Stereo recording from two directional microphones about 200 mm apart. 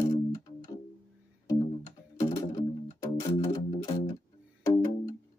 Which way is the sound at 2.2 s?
20° left (ahead or behind).